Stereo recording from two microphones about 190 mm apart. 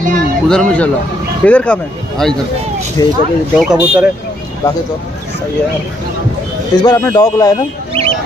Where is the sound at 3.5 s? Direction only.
5° right (ahead or behind).